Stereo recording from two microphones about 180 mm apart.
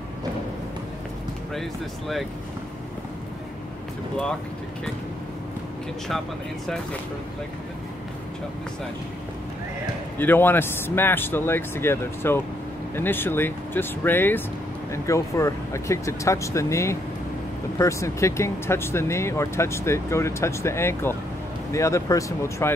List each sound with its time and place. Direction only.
1.5 s speech: centre (ahead or behind)
10.1 s speech: 10° left (ahead or behind)